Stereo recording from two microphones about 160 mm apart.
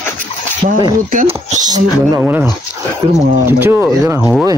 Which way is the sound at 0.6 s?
60° right (ahead or behind).